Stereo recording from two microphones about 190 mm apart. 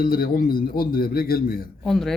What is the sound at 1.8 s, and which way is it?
Speech, centre (ahead or behind).